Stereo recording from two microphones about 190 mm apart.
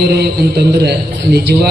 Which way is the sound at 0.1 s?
60° right (ahead or behind).